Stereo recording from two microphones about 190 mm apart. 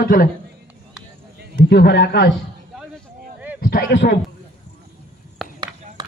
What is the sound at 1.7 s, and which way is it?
Speech, 60° left (ahead or behind).